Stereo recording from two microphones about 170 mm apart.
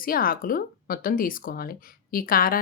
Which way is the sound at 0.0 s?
60° left (ahead or behind).